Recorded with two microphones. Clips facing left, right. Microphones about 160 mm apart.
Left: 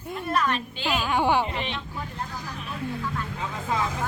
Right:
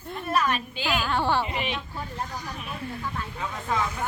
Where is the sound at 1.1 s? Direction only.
15° left (ahead or behind).